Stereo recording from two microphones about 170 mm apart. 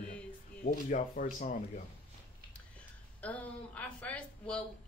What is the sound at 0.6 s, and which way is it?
Speech, 50° left (ahead or behind).